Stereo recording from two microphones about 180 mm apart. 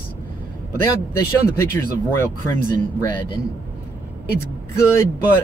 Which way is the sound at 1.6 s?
15° left (ahead or behind).